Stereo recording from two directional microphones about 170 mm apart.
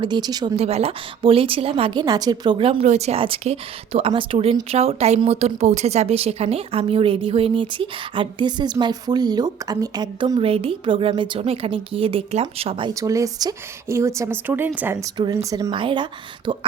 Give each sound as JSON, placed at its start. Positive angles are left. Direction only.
{"t": 0.0, "sound": "speech", "side_deg": -25}
{"t": 0.5, "sound": "a woman's voice", "side_deg": -35}
{"t": 2.8, "sound": "a woman's voice", "side_deg": -40}
{"t": 12.9, "sound": "a woman's voice", "side_deg": -20}